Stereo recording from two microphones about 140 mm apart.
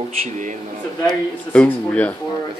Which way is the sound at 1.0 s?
10° left (ahead or behind).